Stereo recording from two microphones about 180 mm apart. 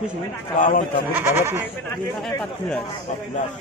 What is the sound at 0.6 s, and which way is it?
Speech, 50° left (ahead or behind).